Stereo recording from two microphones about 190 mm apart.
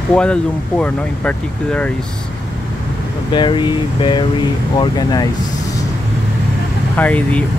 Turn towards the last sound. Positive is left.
turn(degrees=5)  # may be behind; listen again after turning